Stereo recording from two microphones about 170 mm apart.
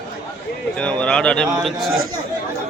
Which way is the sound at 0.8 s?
5° left (ahead or behind).